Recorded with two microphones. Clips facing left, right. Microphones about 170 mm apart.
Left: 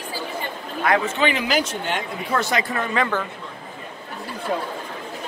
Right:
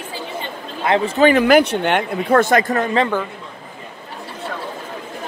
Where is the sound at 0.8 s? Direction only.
30° right (ahead or behind).